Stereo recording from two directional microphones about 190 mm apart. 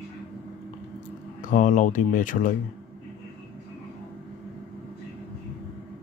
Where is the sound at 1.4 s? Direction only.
45° left (ahead or behind).